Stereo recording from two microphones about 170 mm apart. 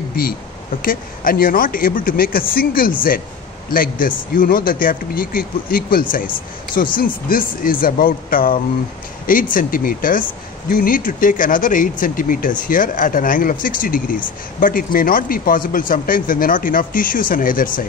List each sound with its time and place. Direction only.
0.1 s speech: 60° left (ahead or behind)